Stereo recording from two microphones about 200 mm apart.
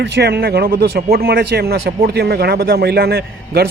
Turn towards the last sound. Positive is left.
turn(degrees=-50)  # may be behind; listen again after turning